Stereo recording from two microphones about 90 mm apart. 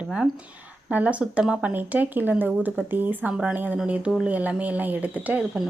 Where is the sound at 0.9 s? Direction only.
15° right (ahead or behind).